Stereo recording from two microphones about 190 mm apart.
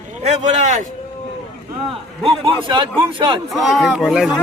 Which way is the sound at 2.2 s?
25° right (ahead or behind).